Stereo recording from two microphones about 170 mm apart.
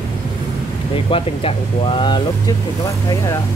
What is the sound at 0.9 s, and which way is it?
Speech, 35° left (ahead or behind).